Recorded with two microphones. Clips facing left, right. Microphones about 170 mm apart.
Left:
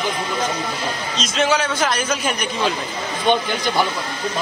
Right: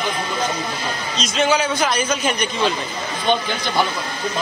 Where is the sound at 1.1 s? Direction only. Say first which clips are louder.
Right 1 dB; centre (ahead or behind).